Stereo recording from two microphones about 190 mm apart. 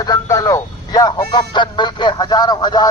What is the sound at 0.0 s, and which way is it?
Speech, 15° left (ahead or behind).